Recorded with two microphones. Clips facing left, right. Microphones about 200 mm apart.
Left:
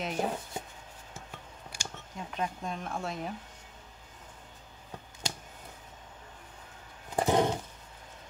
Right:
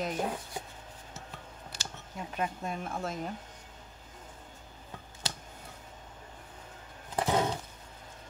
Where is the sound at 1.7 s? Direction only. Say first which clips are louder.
Left 2 dB; 10° left (ahead or behind).